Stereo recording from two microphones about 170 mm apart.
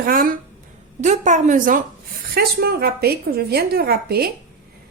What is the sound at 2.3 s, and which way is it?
Speech, 65° right (ahead or behind).